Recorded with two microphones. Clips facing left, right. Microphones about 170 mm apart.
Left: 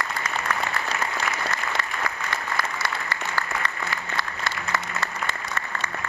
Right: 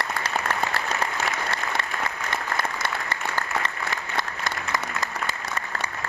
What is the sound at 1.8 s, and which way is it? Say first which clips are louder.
Applause: even; 25° right (ahead or behind).